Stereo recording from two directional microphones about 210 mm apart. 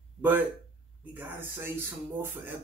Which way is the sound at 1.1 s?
10° right (ahead or behind).